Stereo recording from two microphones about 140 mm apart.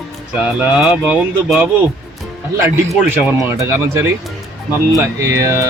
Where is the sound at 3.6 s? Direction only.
15° right (ahead or behind).